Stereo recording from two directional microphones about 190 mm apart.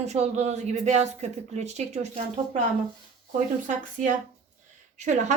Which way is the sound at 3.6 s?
40° right (ahead or behind).